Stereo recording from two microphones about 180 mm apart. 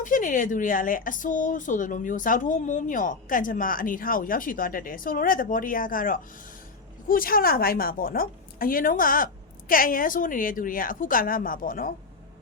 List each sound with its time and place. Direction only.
0.0 s speech: 45° left (ahead or behind)